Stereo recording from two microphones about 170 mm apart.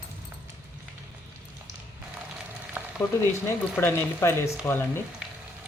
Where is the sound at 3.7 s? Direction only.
15° left (ahead or behind).